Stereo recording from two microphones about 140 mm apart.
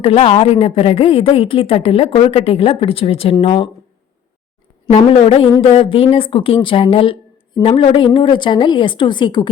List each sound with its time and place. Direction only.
0.0 s speech: 45° left (ahead or behind)
5.2 s speech: 45° left (ahead or behind)